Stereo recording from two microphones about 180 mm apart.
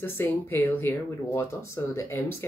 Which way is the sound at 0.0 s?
10° left (ahead or behind).